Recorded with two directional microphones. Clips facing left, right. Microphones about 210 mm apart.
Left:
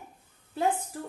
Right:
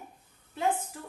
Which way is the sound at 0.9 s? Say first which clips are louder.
Left 6 dB; 40° left (ahead or behind).